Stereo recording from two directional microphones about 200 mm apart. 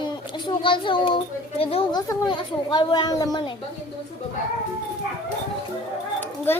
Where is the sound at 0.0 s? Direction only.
25° left (ahead or behind).